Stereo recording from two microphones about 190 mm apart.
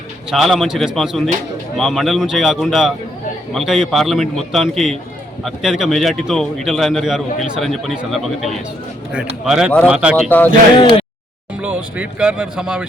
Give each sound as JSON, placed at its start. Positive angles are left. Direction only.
{"t": 0.3, "sound": "speech", "side_deg": 0}
{"t": 10.2, "sound": "speech", "side_deg": 10}
{"t": 10.8, "sound": "speech", "side_deg": 25}
{"t": 11.6, "sound": "speech", "side_deg": -10}